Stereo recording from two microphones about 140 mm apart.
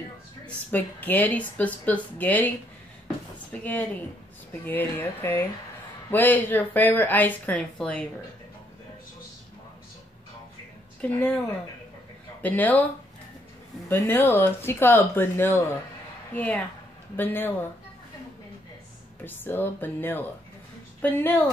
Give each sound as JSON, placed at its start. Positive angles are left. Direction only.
{"t": 0.7, "sound": "speech", "side_deg": 10}
{"t": 4.6, "sound": "speech", "side_deg": 15}
{"t": 11.0, "sound": "speech", "side_deg": 10}
{"t": 13.8, "sound": "speech", "side_deg": 15}
{"t": 19.2, "sound": "speech", "side_deg": 15}